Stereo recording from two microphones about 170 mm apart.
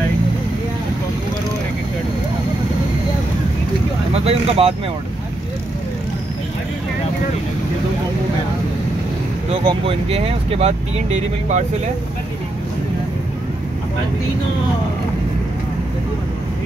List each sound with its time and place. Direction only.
4.1 s speech: 35° right (ahead or behind)
9.5 s speech: 35° right (ahead or behind)